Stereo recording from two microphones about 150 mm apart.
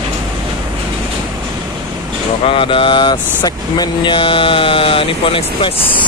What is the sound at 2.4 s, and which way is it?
Speech, 35° left (ahead or behind).